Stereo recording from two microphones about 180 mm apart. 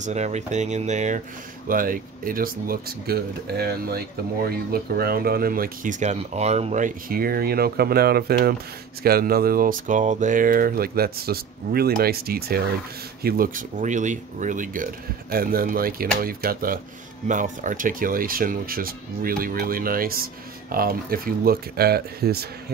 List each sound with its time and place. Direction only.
0.0 s speech: 40° right (ahead or behind)
1.7 s speech: 50° right (ahead or behind)